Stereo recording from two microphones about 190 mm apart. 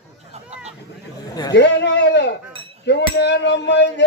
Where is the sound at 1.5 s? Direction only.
65° left (ahead or behind).